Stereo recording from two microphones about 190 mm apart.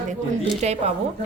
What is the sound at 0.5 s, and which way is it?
Speech, 35° right (ahead or behind).